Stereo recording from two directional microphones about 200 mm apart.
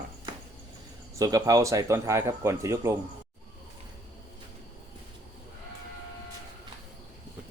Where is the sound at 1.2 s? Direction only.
20° right (ahead or behind).